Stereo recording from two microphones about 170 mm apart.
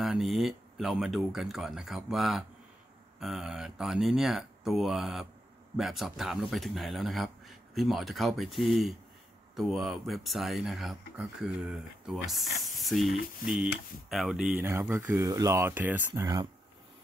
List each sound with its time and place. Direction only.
0.0 s speech: centre (ahead or behind)
14.7 s speech: 15° right (ahead or behind)
16.1 s speech: 25° right (ahead or behind)